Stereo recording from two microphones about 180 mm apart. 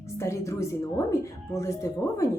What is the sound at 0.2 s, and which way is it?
A woman's voice, 15° left (ahead or behind).